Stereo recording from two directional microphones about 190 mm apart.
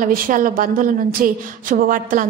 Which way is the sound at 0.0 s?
45° right (ahead or behind).